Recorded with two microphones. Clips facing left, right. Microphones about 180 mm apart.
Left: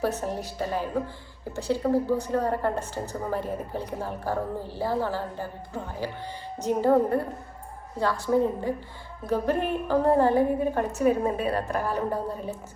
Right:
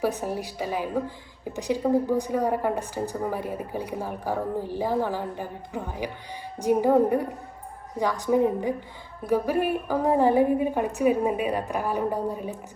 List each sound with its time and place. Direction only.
0.0 s a woman's voice: 10° right (ahead or behind)